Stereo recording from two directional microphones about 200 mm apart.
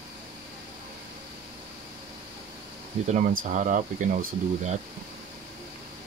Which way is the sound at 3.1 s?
40° right (ahead or behind).